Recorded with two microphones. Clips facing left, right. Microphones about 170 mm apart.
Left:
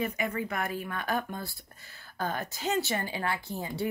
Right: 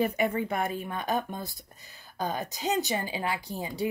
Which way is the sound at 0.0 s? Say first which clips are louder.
Right 5 dB; 35° right (ahead or behind).